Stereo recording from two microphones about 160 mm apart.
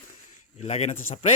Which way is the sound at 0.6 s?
40° left (ahead or behind).